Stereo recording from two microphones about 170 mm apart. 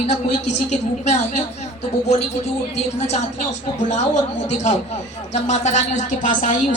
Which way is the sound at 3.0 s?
40° left (ahead or behind).